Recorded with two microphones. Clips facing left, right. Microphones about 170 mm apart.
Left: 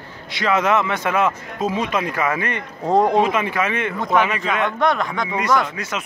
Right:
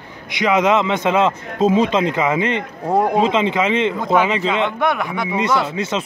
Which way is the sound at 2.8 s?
5° right (ahead or behind).